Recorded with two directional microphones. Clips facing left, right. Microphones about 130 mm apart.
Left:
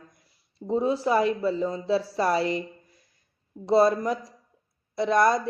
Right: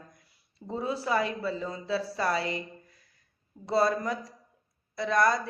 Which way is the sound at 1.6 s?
25° left (ahead or behind).